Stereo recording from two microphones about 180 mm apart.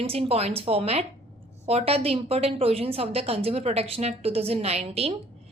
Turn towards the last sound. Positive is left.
turn(degrees=-35)  # may be behind; listen again after turning